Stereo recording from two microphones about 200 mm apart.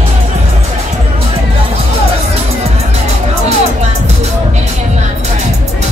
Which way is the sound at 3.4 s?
35° right (ahead or behind).